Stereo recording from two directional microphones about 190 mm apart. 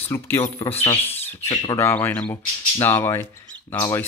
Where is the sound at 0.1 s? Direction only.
15° left (ahead or behind).